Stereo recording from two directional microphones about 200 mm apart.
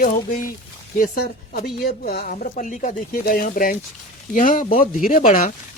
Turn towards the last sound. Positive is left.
turn(degrees=40)  # may be behind; listen again after turning